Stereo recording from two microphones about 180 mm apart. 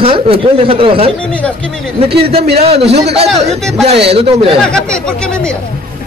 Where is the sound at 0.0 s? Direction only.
30° right (ahead or behind).